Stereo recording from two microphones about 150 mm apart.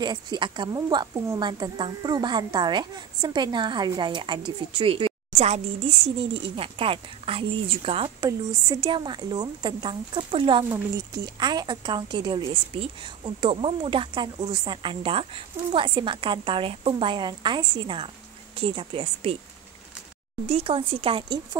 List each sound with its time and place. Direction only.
0.0 s speech: 30° right (ahead or behind)
8.2 s a woman's voice: 25° right (ahead or behind)
10.6 s speech: 25° right (ahead or behind); by 19.3 s 40° right (ahead or behind)
20.4 s speech: 40° right (ahead or behind)